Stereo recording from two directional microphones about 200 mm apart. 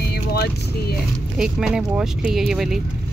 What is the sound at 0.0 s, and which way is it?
Vehicle, 55° left (ahead or behind).